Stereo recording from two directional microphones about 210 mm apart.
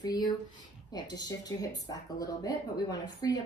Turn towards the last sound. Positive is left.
turn(degrees=15)  # may be behind; listen again after turning